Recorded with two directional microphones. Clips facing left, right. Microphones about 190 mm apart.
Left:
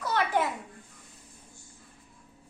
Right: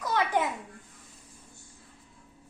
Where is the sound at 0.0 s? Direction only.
15° right (ahead or behind).